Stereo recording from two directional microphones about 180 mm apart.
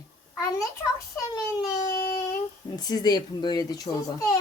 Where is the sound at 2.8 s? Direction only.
20° left (ahead or behind).